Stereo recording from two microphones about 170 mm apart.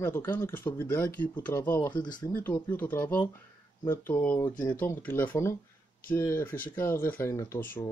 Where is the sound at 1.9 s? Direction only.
25° left (ahead or behind).